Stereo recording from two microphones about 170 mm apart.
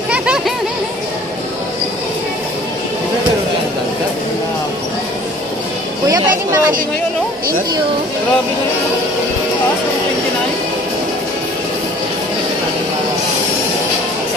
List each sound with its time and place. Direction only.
6.0 s a woman's voice: 20° right (ahead or behind)